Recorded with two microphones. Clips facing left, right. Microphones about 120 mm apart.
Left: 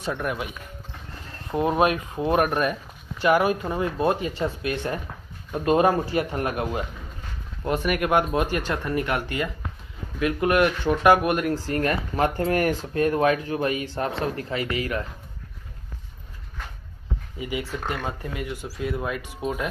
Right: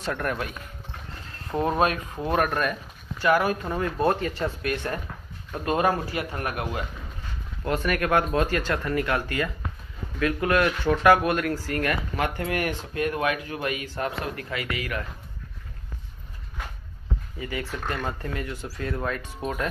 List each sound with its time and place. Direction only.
0.0 s speech: 10° left (ahead or behind); by 15.0 s 30° left (ahead or behind)
17.4 s speech: 15° left (ahead or behind)